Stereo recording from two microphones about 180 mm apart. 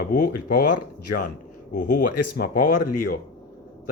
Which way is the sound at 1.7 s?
45° left (ahead or behind).